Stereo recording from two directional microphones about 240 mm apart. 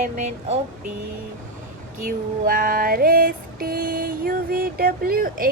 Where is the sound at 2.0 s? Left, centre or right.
Right.